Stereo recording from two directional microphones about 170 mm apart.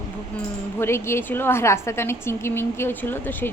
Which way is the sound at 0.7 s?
15° left (ahead or behind).